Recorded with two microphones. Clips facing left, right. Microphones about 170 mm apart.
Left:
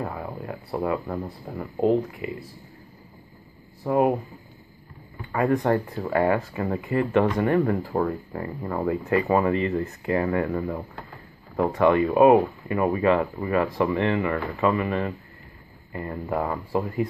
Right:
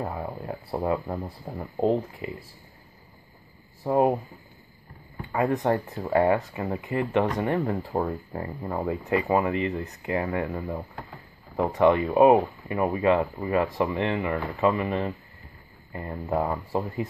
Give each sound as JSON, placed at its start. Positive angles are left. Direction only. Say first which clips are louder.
{"t": 0.0, "sound": "speech", "louder": "even", "side_deg": -20}
{"t": 3.8, "sound": "speech", "louder": "left 1 dB", "side_deg": -25}
{"t": 5.3, "sound": "speech", "louder": "left 2 dB", "side_deg": -20}
{"t": 11.7, "sound": "speech", "louder": "even", "side_deg": -20}